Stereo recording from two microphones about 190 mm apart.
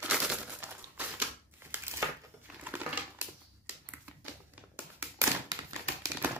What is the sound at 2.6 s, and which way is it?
Typewriter, 10° right (ahead or behind).